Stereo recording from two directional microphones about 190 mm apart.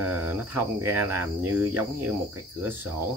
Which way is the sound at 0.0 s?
10° right (ahead or behind).